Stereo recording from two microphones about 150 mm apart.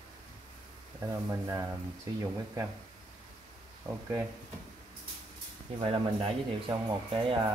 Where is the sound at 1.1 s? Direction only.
20° right (ahead or behind).